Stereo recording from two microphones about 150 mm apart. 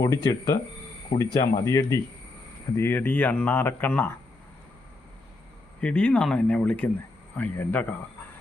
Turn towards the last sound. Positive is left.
turn(degrees=10)  # may be behind; listen again after turning